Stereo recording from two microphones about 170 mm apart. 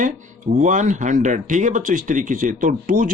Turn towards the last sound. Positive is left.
turn(degrees=-50)  # may be behind; listen again after turning